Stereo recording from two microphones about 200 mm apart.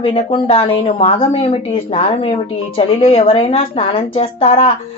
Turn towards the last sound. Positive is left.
turn(degrees=30)  # may be behind; listen again after turning